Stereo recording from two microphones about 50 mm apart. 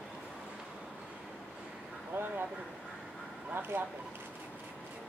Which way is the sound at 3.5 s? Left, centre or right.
Right.